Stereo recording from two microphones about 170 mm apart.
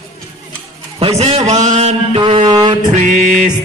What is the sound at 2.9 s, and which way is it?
Music, 45° right (ahead or behind).